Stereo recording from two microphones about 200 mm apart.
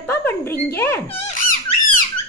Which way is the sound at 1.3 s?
45° left (ahead or behind).